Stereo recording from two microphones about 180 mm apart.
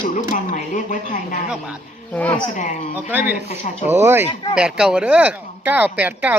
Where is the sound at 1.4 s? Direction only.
5° right (ahead or behind).